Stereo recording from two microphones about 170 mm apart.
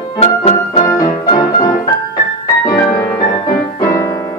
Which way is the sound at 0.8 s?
20° left (ahead or behind).